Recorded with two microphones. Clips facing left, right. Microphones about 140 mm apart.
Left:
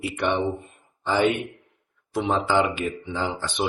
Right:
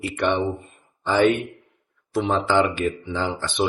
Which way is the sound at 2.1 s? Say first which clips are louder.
Right 2 dB; 15° left (ahead or behind).